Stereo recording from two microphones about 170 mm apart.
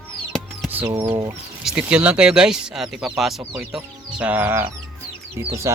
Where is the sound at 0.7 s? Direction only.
15° right (ahead or behind).